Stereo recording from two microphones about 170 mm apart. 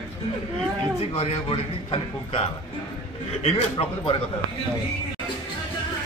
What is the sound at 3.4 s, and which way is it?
Speech, 30° left (ahead or behind).